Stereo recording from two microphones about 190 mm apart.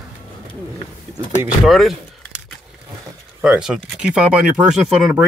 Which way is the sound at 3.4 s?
5° right (ahead or behind).